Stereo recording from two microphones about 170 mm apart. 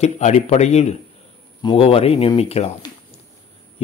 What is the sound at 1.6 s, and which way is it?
A man's voice, 30° left (ahead or behind).